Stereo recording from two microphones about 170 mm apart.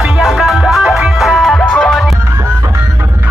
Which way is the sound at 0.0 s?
Centre (ahead or behind).